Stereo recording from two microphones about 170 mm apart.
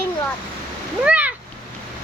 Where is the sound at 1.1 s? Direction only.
10° right (ahead or behind).